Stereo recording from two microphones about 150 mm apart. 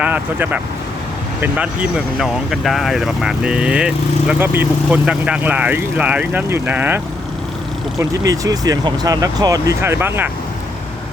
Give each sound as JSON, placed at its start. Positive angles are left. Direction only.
{"t": 0.0, "sound": "speech", "side_deg": -10}
{"t": 8.2, "sound": "speech", "side_deg": -25}